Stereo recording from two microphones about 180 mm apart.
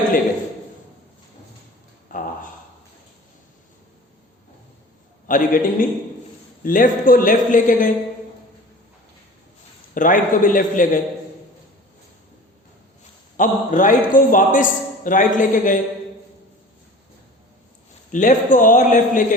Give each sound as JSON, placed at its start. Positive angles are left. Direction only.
{"t": 2.0, "sound": "a sound", "side_deg": 50}
{"t": 5.3, "sound": "a man's voice", "side_deg": 50}
{"t": 9.9, "sound": "a man's voice", "side_deg": 50}
{"t": 13.3, "sound": "a man's voice", "side_deg": 45}
{"t": 18.1, "sound": "a man's voice", "side_deg": 45}